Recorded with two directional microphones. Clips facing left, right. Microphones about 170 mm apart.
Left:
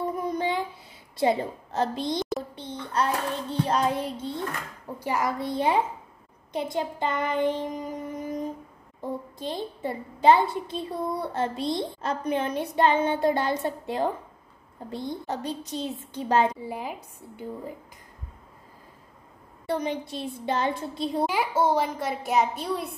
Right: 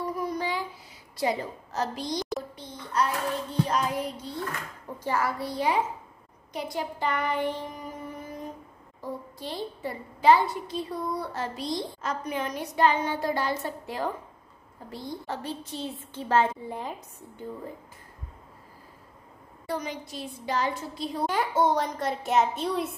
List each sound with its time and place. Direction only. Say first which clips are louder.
0.0 s child singing: left 3 dB; 25° left (ahead or behind)
1.1 s a child's voice: left 4 dB; 25° left (ahead or behind)
2.1 s a sound: left 2 dB; centre (ahead or behind)
2.5 s a child's voice: left 1 dB; 25° left (ahead or behind)
4.9 s a child's voice: left 1 dB; 15° left (ahead or behind)
6.5 s child singing: left 4 dB; 25° left (ahead or behind)
9.0 s a child's voice: left 4 dB; 20° left (ahead or behind)
19.6 s a child's voice: left 5 dB; 25° left (ahead or behind)
21.3 s a child's voice: right 2 dB; 10° left (ahead or behind)